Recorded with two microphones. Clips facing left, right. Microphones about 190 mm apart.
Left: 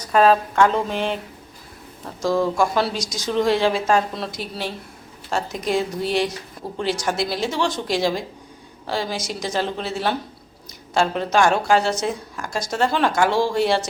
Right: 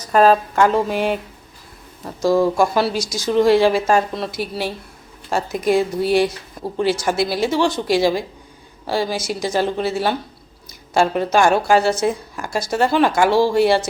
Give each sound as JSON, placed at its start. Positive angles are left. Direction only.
{"t": 0.1, "sound": "speech", "side_deg": 0}
{"t": 2.2, "sound": "speech", "side_deg": -10}